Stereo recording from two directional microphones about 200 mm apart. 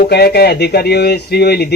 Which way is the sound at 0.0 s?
50° left (ahead or behind).